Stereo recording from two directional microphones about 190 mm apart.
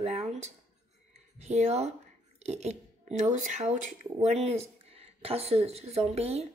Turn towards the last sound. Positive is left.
turn(degrees=-35)  # may be behind; listen again after turning